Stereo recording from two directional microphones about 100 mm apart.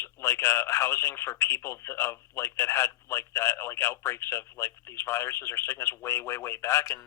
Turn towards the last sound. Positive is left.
turn(degrees=25)  # may be behind; listen again after turning